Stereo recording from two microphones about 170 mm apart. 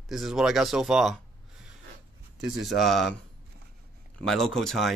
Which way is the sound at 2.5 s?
Centre (ahead or behind).